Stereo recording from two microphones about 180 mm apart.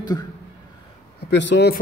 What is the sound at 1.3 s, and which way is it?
Speech, 75° left (ahead or behind).